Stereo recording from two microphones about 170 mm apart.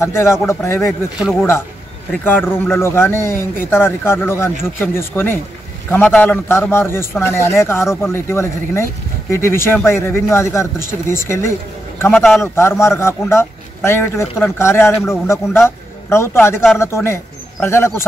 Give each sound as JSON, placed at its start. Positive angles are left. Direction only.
{"t": 0.0, "sound": "a man's voice", "side_deg": 15}
{"t": 2.2, "sound": "a man's voice", "side_deg": 10}
{"t": 12.1, "sound": "a man's voice", "side_deg": 0}
{"t": 12.5, "sound": "a man's voice", "side_deg": 15}